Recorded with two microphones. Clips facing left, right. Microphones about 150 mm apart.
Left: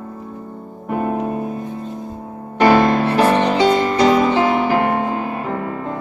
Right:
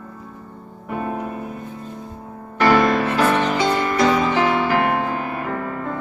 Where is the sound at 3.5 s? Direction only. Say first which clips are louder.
Left 4 dB; 15° left (ahead or behind).